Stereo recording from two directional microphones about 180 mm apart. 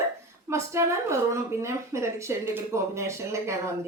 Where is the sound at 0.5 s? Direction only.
15° right (ahead or behind).